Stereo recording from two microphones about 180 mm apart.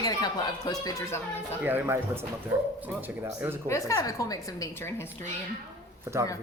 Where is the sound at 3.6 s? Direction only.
15° left (ahead or behind).